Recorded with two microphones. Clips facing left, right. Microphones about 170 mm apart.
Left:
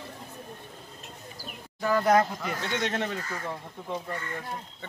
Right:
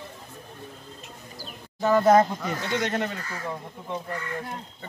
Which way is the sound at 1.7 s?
25° right (ahead or behind).